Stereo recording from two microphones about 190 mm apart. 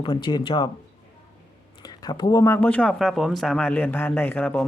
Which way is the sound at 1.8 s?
20° left (ahead or behind).